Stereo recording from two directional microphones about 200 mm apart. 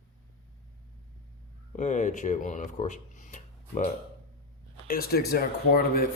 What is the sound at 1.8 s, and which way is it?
Speech, 35° left (ahead or behind).